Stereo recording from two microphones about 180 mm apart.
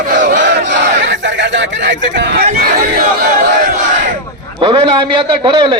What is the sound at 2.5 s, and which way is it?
Crowd, 50° right (ahead or behind).